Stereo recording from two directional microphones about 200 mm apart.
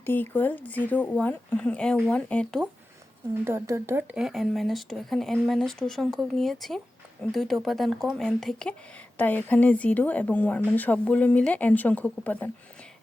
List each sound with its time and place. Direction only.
0.0 s speech: 10° left (ahead or behind)
3.4 s speech: 10° right (ahead or behind); by 12.5 s 5° left (ahead or behind)